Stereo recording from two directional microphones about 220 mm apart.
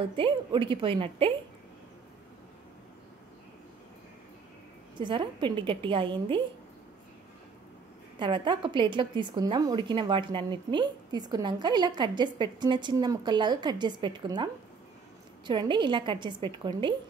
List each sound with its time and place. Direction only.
0.1 s a woman's voice: 25° right (ahead or behind)
4.9 s a woman's voice: 20° right (ahead or behind)
8.2 s a woman's voice: 20° right (ahead or behind)